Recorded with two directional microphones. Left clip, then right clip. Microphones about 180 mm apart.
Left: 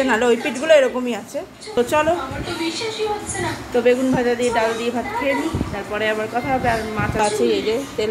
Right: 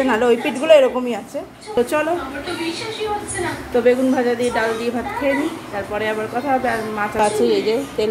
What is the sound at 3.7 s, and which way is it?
A woman's voice, centre (ahead or behind).